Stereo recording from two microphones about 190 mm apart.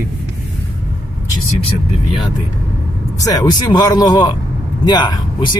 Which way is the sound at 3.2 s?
20° left (ahead or behind).